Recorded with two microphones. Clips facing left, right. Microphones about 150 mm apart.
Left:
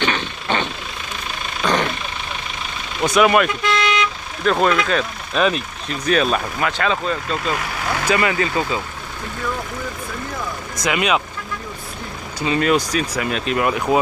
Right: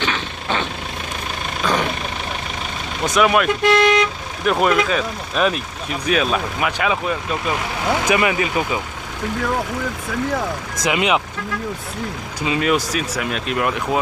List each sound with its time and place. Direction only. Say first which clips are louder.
0.0 s vehicle: left 2 dB; centre (ahead or behind)
3.1 s speech: left 1 dB; centre (ahead or behind)
3.6 s vehicle: right 6 dB; 60° right (ahead or behind)
4.5 s speech: even; 10° right (ahead or behind)
10.9 s speech: right 1 dB; 20° right (ahead or behind)
12.4 s speech: left 1 dB; 5° right (ahead or behind)